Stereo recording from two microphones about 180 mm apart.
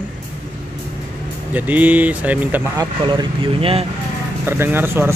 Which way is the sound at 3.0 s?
25° right (ahead or behind).